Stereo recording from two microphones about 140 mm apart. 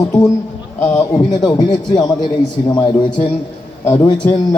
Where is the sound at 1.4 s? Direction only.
30° left (ahead or behind).